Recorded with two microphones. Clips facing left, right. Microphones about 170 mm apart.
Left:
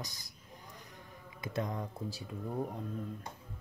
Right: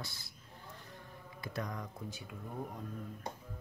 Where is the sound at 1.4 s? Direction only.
25° left (ahead or behind).